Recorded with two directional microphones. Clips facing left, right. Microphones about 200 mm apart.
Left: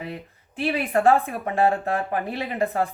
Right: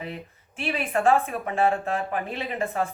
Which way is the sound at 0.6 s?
35° left (ahead or behind).